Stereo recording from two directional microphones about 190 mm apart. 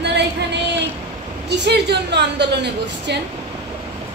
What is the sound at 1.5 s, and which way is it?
A woman's voice, 65° right (ahead or behind).